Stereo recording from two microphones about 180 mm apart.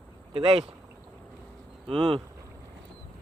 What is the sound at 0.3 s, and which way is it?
Speech, 30° right (ahead or behind).